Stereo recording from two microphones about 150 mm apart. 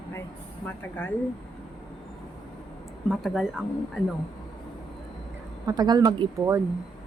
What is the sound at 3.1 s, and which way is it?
Speech, centre (ahead or behind).